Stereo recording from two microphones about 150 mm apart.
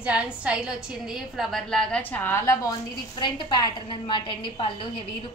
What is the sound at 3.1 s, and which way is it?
A woman's voice, 30° left (ahead or behind).